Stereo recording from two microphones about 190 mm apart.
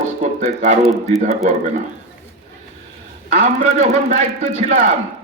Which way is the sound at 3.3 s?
35° right (ahead or behind).